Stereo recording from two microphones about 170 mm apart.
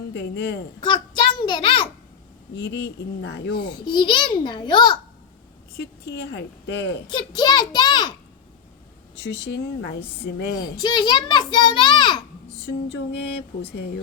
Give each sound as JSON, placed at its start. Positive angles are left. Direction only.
{"t": 0.1, "sound": "speech", "side_deg": 90}
{"t": 0.8, "sound": "a sound", "side_deg": 25}
{"t": 2.6, "sound": "speech", "side_deg": 90}
{"t": 3.6, "sound": "a child's voice", "side_deg": 25}
{"t": 5.7, "sound": "speech", "side_deg": 90}
{"t": 7.1, "sound": "a child's voice", "side_deg": 25}
{"t": 9.1, "sound": "speech", "side_deg": 90}
{"t": 10.5, "sound": "a child's voice", "side_deg": 25}
{"t": 12.6, "sound": "music", "side_deg": 85}